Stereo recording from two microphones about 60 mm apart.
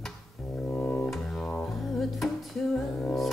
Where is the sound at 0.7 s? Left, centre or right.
Left.